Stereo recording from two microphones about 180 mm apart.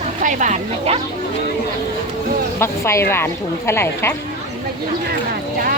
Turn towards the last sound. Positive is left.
turn(degrees=15)  # may be behind; listen again after turning